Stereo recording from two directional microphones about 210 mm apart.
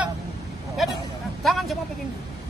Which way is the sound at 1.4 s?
Centre (ahead or behind).